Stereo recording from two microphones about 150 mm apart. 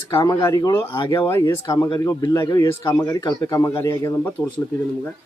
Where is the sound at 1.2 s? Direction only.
15° left (ahead or behind).